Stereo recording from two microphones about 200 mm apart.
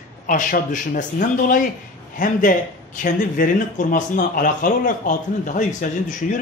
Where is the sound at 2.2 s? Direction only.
45° left (ahead or behind).